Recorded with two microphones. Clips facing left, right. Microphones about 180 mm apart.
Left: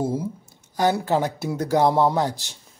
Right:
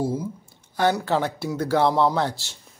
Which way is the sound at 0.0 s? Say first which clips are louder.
Left 1 dB; 25° left (ahead or behind).